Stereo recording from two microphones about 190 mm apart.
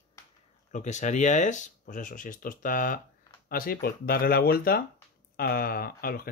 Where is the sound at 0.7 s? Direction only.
40° left (ahead or behind).